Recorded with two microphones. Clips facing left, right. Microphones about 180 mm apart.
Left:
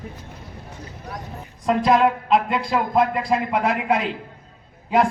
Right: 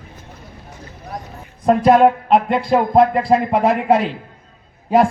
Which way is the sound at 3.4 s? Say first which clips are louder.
Right 5 dB; 35° right (ahead or behind).